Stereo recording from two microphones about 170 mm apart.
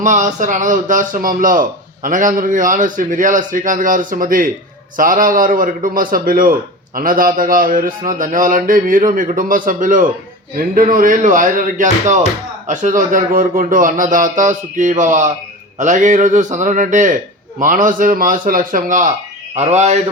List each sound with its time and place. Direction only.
0.0 s a man's voice: 45° right (ahead or behind)